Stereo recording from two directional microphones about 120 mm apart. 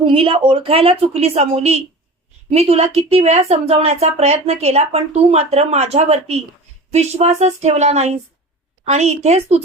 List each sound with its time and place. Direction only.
0.0 s a woman's voice: 50° right (ahead or behind); by 9.6 s 65° right (ahead or behind)